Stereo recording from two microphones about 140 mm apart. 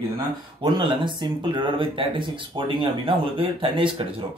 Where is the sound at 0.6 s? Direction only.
35° right (ahead or behind).